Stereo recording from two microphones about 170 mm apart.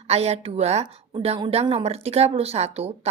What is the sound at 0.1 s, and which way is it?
A woman's voice, 40° right (ahead or behind).